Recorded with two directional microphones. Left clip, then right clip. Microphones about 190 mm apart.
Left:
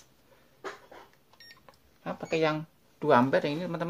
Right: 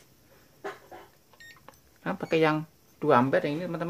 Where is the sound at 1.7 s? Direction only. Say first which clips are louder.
Right 4 dB; 25° right (ahead or behind).